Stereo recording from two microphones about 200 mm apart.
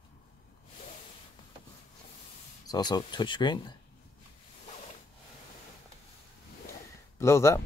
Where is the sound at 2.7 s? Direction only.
20° left (ahead or behind).